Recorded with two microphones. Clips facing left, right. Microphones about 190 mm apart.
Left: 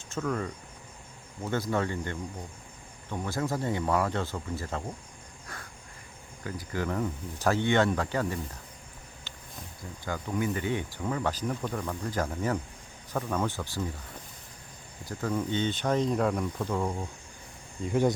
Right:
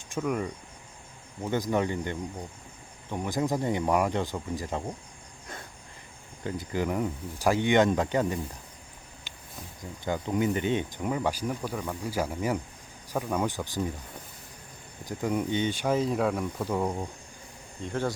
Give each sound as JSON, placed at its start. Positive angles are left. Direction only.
{"t": 0.0, "sound": "speech", "side_deg": -15}
{"t": 6.4, "sound": "speech", "side_deg": -20}
{"t": 9.3, "sound": "a sound", "side_deg": -15}
{"t": 10.0, "sound": "speech", "side_deg": -20}
{"t": 15.0, "sound": "speech", "side_deg": -15}
{"t": 17.8, "sound": "speech", "side_deg": 10}